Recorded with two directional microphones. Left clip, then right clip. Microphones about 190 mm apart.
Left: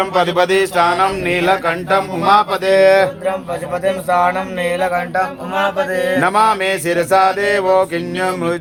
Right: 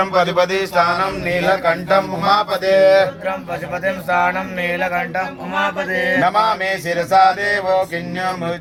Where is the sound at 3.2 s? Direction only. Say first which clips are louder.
Left 3 dB; 20° left (ahead or behind).